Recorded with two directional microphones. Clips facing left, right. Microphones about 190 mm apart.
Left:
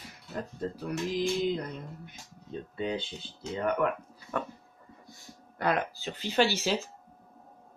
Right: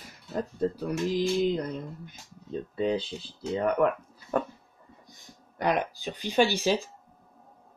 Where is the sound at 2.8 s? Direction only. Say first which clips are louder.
Right 5 dB; 35° right (ahead or behind).